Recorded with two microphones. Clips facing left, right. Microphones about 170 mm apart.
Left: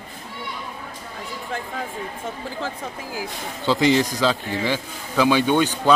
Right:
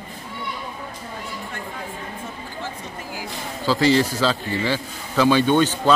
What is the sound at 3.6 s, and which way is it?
A man's voice, 20° left (ahead or behind).